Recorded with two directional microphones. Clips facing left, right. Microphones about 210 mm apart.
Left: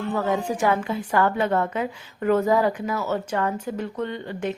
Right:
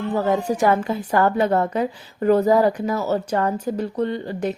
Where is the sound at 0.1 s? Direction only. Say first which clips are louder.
Right 4 dB; 35° right (ahead or behind).